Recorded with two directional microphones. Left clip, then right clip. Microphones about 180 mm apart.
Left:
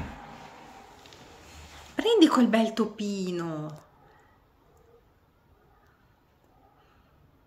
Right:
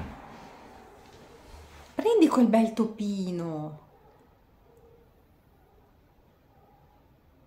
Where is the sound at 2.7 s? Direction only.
20° right (ahead or behind).